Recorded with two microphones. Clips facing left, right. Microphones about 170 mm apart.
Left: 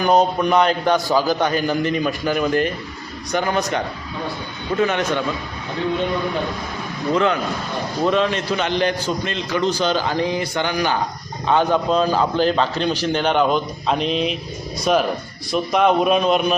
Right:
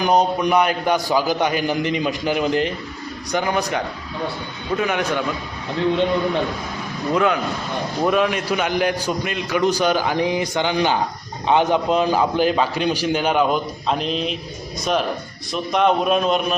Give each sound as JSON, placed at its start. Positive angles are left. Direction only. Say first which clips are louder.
{"t": 0.0, "sound": "a man's voice", "louder": "left 1 dB", "side_deg": -10}
{"t": 4.8, "sound": "a man's voice", "louder": "left 3 dB", "side_deg": -15}
{"t": 7.1, "sound": "a man's voice", "louder": "even", "side_deg": -15}